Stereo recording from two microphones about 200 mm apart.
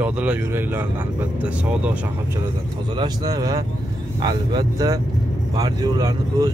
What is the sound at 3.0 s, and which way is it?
Speech, 20° right (ahead or behind).